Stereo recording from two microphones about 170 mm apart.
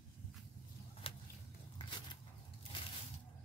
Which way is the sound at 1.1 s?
30° left (ahead or behind).